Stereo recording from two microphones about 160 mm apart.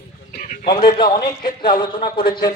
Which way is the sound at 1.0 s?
65° left (ahead or behind).